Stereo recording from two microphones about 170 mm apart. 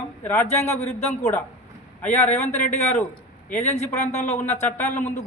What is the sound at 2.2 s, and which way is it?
Speech, 40° left (ahead or behind).